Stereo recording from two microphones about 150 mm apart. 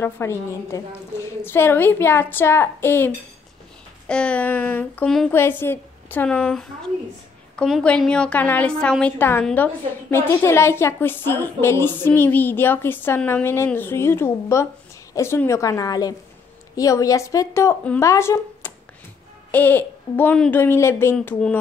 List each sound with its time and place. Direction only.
0.0 s a woman's voice: 20° left (ahead or behind)
4.1 s a woman's voice: 5° left (ahead or behind)
5.3 s a woman's voice: 15° left (ahead or behind)